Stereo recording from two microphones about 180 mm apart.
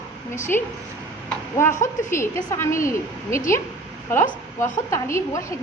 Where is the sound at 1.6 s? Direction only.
15° left (ahead or behind).